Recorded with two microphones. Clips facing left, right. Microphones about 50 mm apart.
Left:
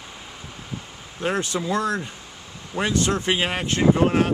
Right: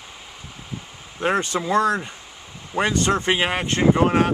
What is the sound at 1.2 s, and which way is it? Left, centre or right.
Speech, right.